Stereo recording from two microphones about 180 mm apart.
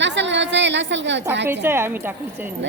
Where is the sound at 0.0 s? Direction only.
80° right.